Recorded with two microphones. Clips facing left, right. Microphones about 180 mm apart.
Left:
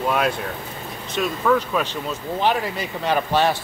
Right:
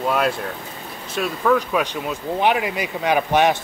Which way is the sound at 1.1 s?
5° right (ahead or behind).